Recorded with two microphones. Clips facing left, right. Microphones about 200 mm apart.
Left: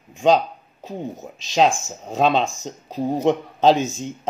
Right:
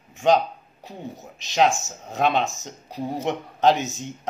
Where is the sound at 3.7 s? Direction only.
20° right (ahead or behind).